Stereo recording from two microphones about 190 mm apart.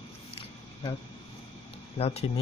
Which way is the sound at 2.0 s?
35° left (ahead or behind).